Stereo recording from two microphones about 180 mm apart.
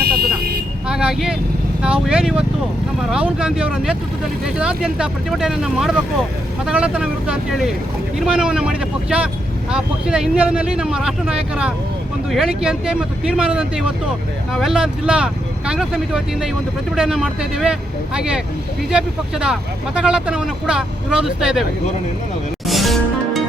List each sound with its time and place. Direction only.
0.2 s vehicle: 60° right (ahead or behind)
0.9 s vehicle: 5° right (ahead or behind)
1.8 s speech: 5° right (ahead or behind)
12.3 s speech: centre (ahead or behind)
22.6 s music: centre (ahead or behind)